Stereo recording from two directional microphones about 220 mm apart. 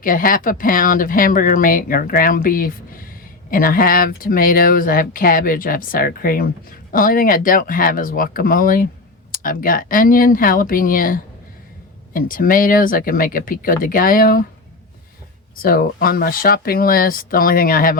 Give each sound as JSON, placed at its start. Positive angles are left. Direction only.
{"t": 0.0, "sound": "speech", "side_deg": 40}
{"t": 15.5, "sound": "speech", "side_deg": 40}